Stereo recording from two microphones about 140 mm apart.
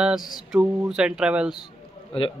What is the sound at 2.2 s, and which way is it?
Speech, 40° left (ahead or behind).